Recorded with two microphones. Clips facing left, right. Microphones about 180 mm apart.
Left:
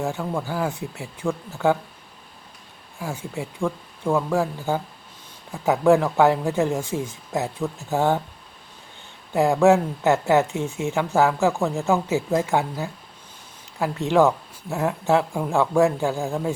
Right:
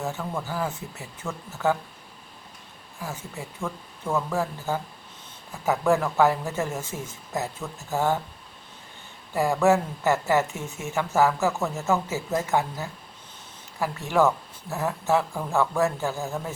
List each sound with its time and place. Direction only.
0.0 s speech: 15° left (ahead or behind)
3.0 s speech: 15° left (ahead or behind)
9.3 s speech: 15° left (ahead or behind)